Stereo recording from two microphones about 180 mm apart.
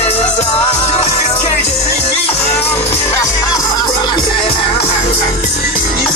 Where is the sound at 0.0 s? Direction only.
35° left (ahead or behind).